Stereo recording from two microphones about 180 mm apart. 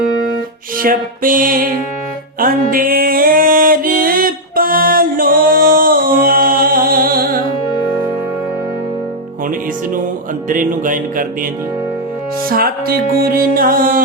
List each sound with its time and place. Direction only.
0.8 s music: 50° right (ahead or behind)
10.5 s music: 50° right (ahead or behind)
12.5 s music: 55° right (ahead or behind)